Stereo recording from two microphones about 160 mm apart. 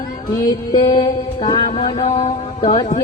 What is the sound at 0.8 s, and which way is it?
Music, 25° left (ahead or behind).